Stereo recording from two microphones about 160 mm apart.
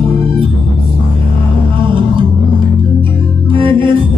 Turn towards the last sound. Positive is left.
turn(degrees=-30)  # may be behind; listen again after turning